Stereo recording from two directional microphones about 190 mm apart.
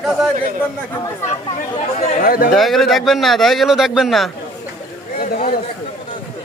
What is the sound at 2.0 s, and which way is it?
Speech, 35° left (ahead or behind).